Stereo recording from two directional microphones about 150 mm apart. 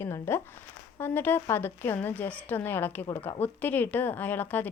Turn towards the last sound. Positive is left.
turn(degrees=10)  # may be behind; listen again after turning